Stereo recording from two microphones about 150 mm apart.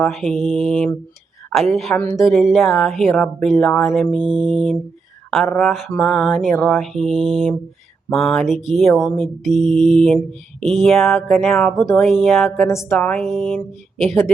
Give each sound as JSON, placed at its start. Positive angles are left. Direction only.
{"t": 0.0, "sound": "mantra", "side_deg": 0}
{"t": 4.2, "sound": "music", "side_deg": -30}
{"t": 4.5, "sound": "mantra", "side_deg": 5}
{"t": 5.3, "sound": "speech", "side_deg": 0}
{"t": 5.6, "sound": "mantra", "side_deg": 0}
{"t": 6.0, "sound": "a sound", "side_deg": 10}
{"t": 6.3, "sound": "mantra", "side_deg": 0}
{"t": 12.5, "sound": "a woman's voice", "side_deg": 20}
{"t": 13.0, "sound": "mantra", "side_deg": 5}